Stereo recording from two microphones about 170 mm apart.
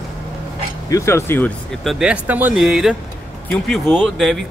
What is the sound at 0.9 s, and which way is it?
Speech, 15° left (ahead or behind).